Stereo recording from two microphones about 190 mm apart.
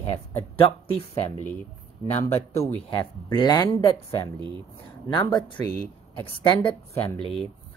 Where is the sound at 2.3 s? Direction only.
15° left (ahead or behind).